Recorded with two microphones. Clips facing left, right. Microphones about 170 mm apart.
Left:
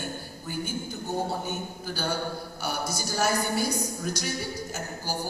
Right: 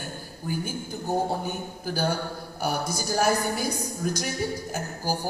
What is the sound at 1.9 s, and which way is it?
A woman's voice, 50° right (ahead or behind).